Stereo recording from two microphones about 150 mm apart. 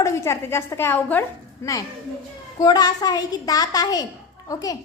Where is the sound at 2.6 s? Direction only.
25° left (ahead or behind).